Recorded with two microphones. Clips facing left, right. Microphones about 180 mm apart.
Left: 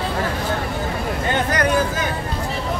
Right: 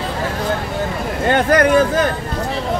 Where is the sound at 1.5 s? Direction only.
55° right (ahead or behind).